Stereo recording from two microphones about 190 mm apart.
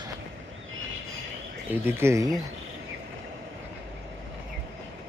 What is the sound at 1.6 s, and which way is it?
Speech, 10° right (ahead or behind).